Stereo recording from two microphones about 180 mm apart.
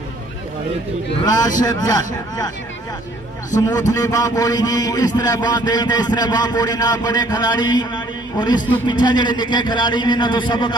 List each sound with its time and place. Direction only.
1.2 s a man's voice: 20° left (ahead or behind)
3.9 s a man's voice: 20° left (ahead or behind)